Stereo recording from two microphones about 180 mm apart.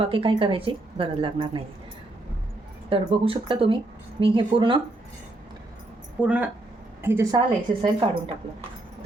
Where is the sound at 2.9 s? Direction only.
30° right (ahead or behind).